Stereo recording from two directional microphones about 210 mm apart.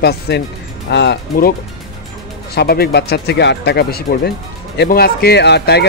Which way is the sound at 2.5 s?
45° left (ahead or behind).